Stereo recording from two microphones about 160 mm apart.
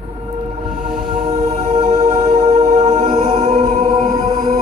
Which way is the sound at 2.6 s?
45° right (ahead or behind).